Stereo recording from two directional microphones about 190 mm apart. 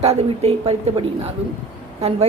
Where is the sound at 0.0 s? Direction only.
35° right (ahead or behind).